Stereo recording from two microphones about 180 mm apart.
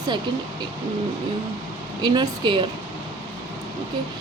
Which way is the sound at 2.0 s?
25° right (ahead or behind).